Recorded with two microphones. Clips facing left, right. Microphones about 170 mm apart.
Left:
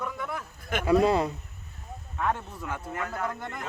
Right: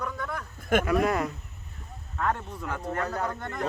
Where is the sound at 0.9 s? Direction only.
30° left (ahead or behind).